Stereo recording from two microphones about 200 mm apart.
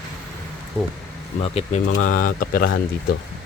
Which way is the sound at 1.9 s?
90° left.